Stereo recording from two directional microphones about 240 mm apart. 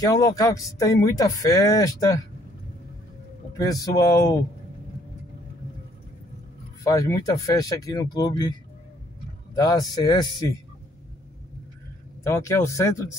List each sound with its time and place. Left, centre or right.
0.0 s speech: centre
3.9 s speech: centre
6.8 s speech: centre
9.6 s speech: centre
12.2 s speech: centre